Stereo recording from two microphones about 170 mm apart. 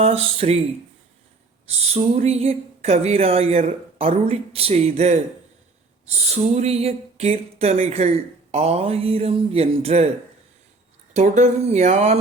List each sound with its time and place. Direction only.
0.0 s speech: 35° right (ahead or behind)
1.8 s speech: 40° right (ahead or behind)
11.1 s speech: 45° right (ahead or behind)